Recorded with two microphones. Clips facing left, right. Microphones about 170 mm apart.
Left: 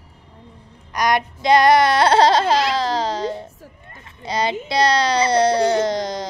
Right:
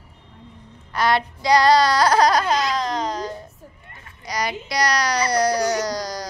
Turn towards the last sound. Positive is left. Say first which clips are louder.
# left 5 dB
turn(degrees=25)  # may be behind; listen again after turning